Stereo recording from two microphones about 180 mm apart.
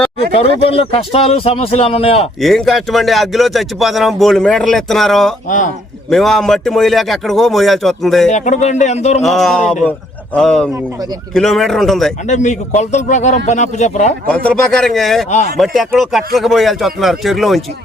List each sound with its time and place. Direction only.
0.7 s a man's voice: 30° left (ahead or behind)
2.4 s speech: centre (ahead or behind)
5.5 s a man's voice: 45° left (ahead or behind)
6.1 s speech: centre (ahead or behind)
8.3 s a man's voice: 40° left (ahead or behind)
9.2 s speech: centre (ahead or behind)
12.2 s a man's voice: 40° left (ahead or behind)
14.3 s speech: 5° left (ahead or behind)